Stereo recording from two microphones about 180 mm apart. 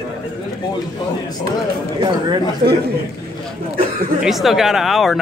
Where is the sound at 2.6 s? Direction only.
60° right (ahead or behind).